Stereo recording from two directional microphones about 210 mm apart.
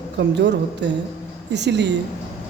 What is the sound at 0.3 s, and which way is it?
Speech, 55° right (ahead or behind).